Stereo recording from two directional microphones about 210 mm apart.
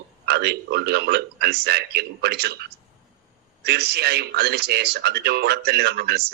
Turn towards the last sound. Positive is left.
turn(degrees=-50)  # may be behind; listen again after turning